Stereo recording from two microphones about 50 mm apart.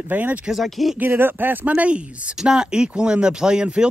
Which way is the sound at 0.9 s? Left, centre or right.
Right.